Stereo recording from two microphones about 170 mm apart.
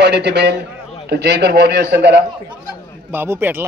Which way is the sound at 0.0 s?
80° right.